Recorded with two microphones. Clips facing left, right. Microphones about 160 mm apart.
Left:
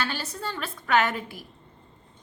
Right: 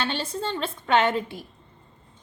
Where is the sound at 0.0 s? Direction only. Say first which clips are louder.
Right 3 dB; 25° right (ahead or behind).